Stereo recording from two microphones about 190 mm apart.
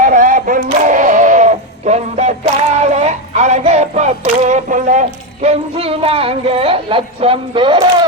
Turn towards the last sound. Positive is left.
turn(degrees=-25)  # may be behind; listen again after turning